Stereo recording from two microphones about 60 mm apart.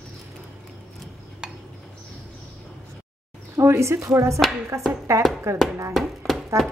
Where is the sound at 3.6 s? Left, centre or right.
Right.